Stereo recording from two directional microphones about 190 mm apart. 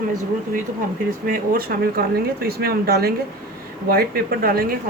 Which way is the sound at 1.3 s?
50° right (ahead or behind).